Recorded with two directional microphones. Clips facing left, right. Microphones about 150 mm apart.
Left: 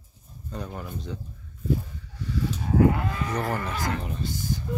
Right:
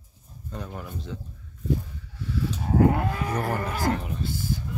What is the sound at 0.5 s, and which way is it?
Speech, centre (ahead or behind).